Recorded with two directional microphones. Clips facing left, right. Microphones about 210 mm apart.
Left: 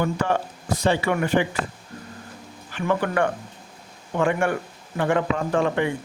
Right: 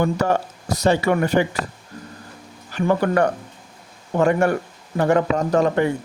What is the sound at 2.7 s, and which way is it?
A man's voice, 40° right (ahead or behind).